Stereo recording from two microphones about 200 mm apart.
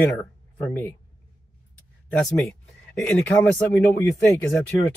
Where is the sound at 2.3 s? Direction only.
5° left (ahead or behind).